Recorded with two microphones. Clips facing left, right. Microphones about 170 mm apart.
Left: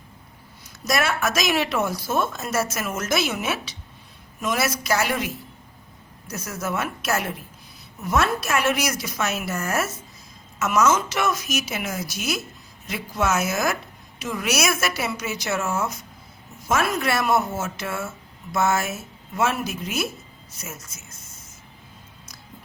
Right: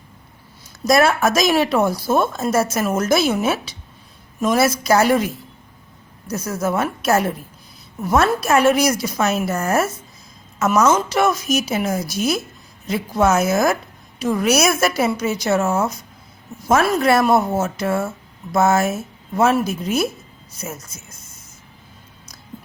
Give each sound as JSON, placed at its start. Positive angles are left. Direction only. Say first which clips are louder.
{"t": 0.9, "sound": "a woman's voice", "louder": "right 8 dB", "side_deg": -35}